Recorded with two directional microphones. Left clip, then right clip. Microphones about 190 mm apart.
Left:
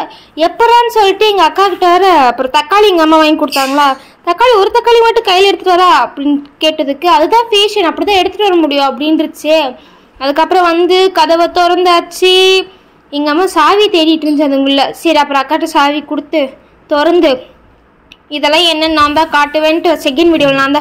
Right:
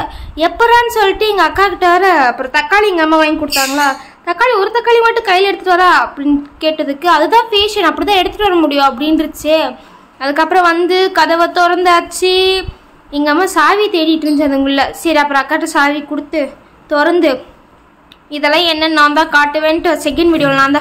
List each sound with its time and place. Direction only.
0.0 s a woman's voice: 5° left (ahead or behind)